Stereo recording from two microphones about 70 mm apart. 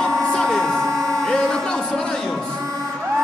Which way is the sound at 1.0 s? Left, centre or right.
Right.